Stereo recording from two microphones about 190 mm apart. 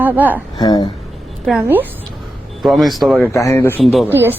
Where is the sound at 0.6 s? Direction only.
20° left (ahead or behind).